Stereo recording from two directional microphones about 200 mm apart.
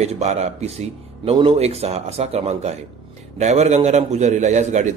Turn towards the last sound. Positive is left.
turn(degrees=-35)  # may be behind; listen again after turning